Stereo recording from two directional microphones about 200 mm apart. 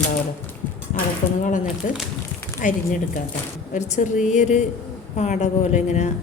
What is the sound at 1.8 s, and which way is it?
A woman's voice, 40° left (ahead or behind).